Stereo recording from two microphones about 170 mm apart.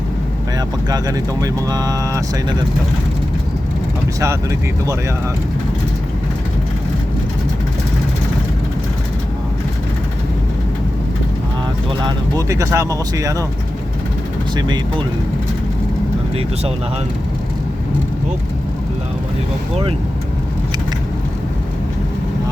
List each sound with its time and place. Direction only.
0.9 s speech: 20° right (ahead or behind)
11.9 s speech: 25° right (ahead or behind)
14.5 s speech: 25° right (ahead or behind)